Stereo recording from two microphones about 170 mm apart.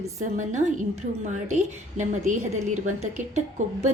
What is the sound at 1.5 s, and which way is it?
A woman's voice, 45° right (ahead or behind).